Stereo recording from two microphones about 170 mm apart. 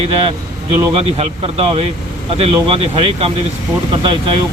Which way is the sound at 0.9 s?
35° right (ahead or behind).